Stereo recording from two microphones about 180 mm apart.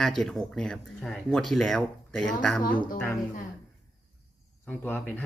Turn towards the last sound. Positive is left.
turn(degrees=10)  # may be behind; listen again after turning